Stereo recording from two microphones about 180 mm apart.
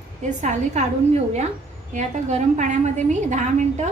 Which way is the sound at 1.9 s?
40° right (ahead or behind).